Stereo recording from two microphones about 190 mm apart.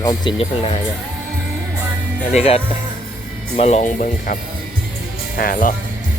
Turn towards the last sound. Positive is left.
turn(degrees=45)  # may be behind; listen again after turning